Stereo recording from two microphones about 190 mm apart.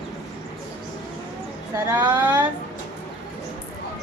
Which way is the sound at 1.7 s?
10° right (ahead or behind).